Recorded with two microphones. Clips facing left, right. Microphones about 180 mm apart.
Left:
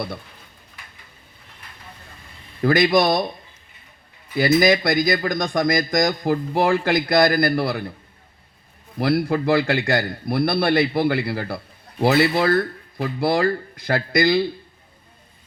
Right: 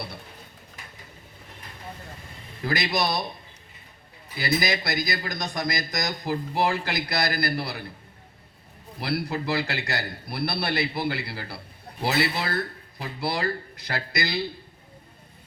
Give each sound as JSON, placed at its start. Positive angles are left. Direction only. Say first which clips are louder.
{"t": 2.6, "sound": "a man's voice", "louder": "left 10 dB", "side_deg": 50}
{"t": 4.4, "sound": "a man's voice", "louder": "left 10 dB", "side_deg": 50}
{"t": 9.0, "sound": "a man's voice", "louder": "left 8 dB", "side_deg": 50}